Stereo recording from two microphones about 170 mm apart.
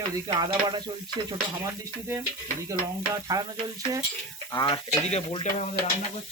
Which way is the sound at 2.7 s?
20° right (ahead or behind).